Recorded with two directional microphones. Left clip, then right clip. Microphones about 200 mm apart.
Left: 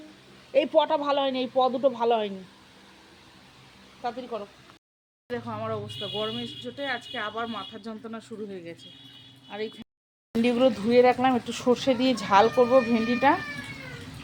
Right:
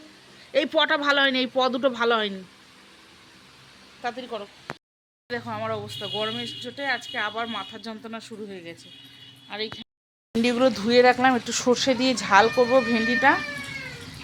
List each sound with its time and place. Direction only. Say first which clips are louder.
0.5 s speech: even; 5° right (ahead or behind)
4.0 s speech: right 1 dB; centre (ahead or behind)